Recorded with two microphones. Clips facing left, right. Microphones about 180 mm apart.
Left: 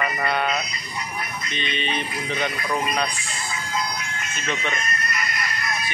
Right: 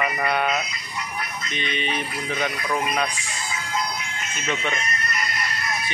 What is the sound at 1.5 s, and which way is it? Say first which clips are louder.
Speech: even; 10° right (ahead or behind).